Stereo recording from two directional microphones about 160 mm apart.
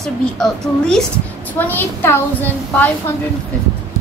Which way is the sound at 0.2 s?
5° left (ahead or behind).